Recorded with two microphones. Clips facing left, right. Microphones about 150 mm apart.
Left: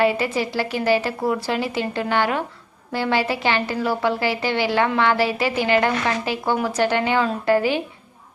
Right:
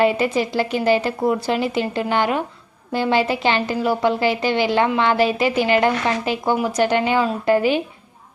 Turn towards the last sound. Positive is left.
turn(degrees=-20)  # may be behind; listen again after turning